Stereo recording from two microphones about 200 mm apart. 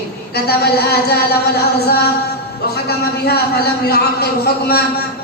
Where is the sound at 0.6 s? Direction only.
55° left (ahead or behind).